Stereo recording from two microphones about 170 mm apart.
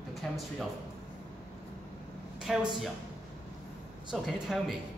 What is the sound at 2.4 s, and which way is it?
Speech, 5° right (ahead or behind).